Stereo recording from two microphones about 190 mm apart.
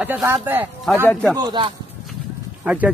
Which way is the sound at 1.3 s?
25° right (ahead or behind).